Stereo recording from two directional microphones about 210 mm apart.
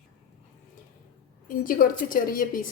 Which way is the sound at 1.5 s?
40° left (ahead or behind).